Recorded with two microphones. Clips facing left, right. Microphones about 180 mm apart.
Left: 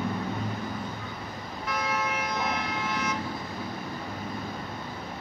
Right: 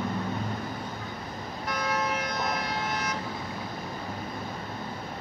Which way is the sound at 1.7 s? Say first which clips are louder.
Right 1 dB; 40° right (ahead or behind).